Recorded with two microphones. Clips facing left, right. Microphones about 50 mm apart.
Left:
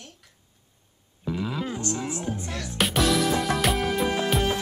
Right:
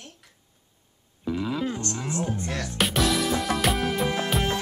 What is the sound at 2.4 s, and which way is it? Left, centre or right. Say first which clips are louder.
Speech: right 3 dB; right.